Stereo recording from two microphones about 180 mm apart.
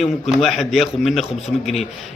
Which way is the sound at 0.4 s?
Centre (ahead or behind).